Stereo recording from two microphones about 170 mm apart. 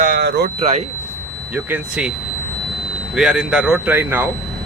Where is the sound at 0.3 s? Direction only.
80° right.